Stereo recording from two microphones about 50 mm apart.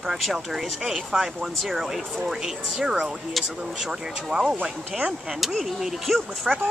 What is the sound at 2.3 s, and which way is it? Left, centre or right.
Speech, centre.